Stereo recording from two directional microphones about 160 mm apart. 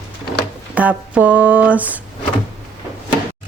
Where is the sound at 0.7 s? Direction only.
10° right (ahead or behind).